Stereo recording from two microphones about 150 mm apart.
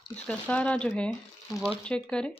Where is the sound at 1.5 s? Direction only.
25° left (ahead or behind).